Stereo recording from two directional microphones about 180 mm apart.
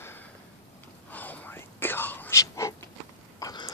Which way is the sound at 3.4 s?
20° left (ahead or behind).